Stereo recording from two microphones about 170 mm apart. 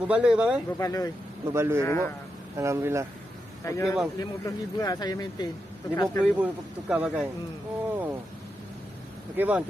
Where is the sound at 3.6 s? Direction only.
15° left (ahead or behind).